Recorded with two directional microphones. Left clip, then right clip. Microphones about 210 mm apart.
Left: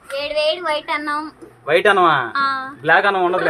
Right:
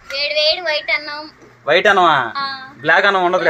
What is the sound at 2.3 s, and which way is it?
Speech, 50° left (ahead or behind).